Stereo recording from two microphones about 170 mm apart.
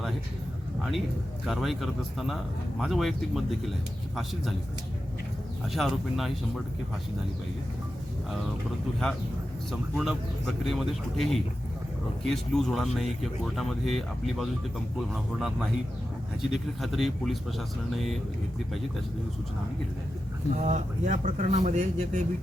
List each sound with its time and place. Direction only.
1.5 s speech: centre (ahead or behind)
5.6 s speech: centre (ahead or behind)
10.0 s speech: centre (ahead or behind)
20.6 s speech: 40° right (ahead or behind)